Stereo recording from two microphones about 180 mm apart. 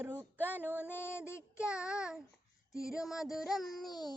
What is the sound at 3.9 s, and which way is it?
Speech, 25° left (ahead or behind).